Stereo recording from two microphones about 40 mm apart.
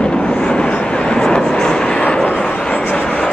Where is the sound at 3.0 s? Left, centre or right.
Centre.